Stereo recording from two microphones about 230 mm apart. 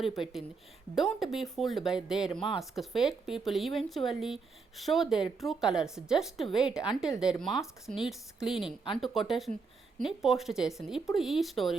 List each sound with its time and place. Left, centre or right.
0.9 s speech: centre
2.3 s speech: left
2.6 s speech: centre
8.6 s speech: left
9.1 s speech: centre